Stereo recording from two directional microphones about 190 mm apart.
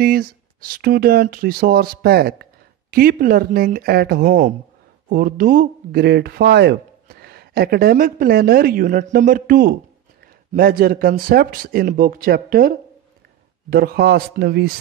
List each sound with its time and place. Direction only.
0.0 s a man's voice: 50° right (ahead or behind)